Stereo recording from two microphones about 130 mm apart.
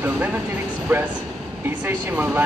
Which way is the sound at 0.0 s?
15° right (ahead or behind).